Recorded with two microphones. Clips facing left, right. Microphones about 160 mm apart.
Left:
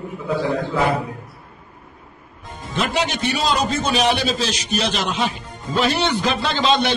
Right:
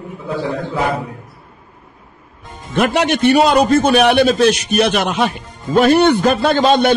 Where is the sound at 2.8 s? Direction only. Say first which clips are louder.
Right 8 dB; 60° right (ahead or behind).